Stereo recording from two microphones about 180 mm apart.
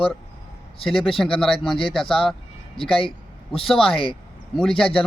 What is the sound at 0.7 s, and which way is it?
Speech, 30° left (ahead or behind).